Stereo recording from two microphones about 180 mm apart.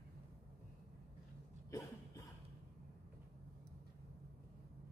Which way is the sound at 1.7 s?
15° left (ahead or behind).